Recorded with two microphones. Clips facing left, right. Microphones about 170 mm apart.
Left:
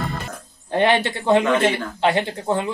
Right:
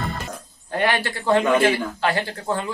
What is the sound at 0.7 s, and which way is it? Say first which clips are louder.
Speech: left 4 dB; 25° left (ahead or behind).